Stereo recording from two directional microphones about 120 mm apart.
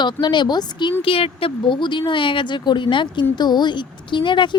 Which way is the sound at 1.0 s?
50° left (ahead or behind).